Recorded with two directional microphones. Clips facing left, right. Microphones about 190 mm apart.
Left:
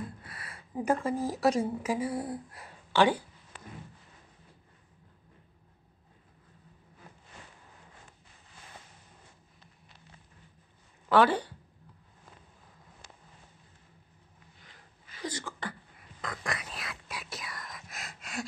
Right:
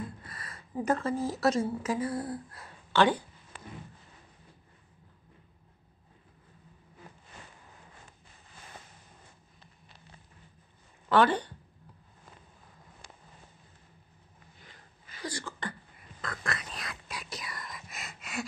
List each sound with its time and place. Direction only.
0.2 s speech: 5° left (ahead or behind)
11.1 s speech: 5° left (ahead or behind)
15.2 s speech: 20° left (ahead or behind)
16.2 s whispering: 15° left (ahead or behind); by 18.4 s centre (ahead or behind)